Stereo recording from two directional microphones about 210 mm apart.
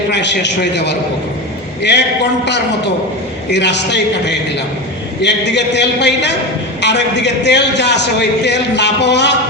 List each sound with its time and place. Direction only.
0.1 s a man's voice: 55° left (ahead or behind)